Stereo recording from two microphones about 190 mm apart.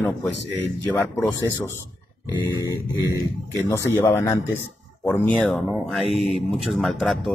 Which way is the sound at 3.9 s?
15° left (ahead or behind).